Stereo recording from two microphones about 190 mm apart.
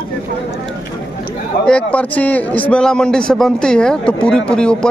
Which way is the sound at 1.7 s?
5° left (ahead or behind).